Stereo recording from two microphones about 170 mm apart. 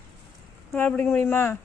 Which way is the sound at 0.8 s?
10° left (ahead or behind).